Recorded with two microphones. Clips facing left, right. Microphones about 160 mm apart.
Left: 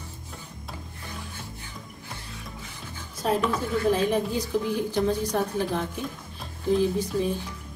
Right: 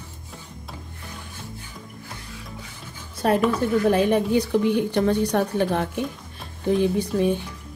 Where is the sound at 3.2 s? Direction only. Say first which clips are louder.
Right 5 dB; 65° right (ahead or behind).